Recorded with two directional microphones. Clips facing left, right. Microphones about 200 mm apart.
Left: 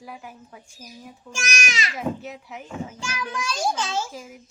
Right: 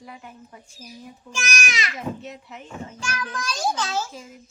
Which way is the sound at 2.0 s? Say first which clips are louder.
Left 3 dB; 5° left (ahead or behind).